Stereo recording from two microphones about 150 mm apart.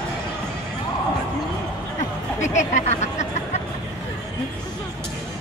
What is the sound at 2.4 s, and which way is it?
Speech, 50° left (ahead or behind).